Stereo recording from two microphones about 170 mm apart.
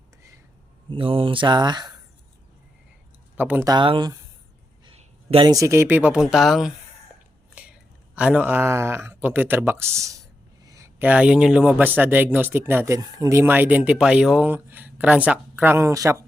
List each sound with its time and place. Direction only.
0.9 s speech: 30° right (ahead or behind)
3.3 s a man's voice: 10° right (ahead or behind)
3.7 s speech: 30° right (ahead or behind)
4.9 s a sound: 35° right (ahead or behind)
5.5 s a man's voice: 20° right (ahead or behind); by 6.7 s centre (ahead or behind)
7.6 s whispering: 10° right (ahead or behind)
8.1 s a man's voice: 5° right (ahead or behind)